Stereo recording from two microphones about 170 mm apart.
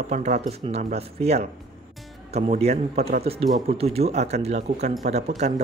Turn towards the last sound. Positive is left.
turn(degrees=-40)  # may be behind; listen again after turning